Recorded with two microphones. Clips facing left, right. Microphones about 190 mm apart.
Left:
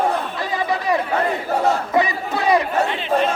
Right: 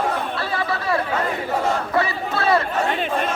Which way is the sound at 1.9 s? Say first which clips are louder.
Left 2 dB; 15° left (ahead or behind).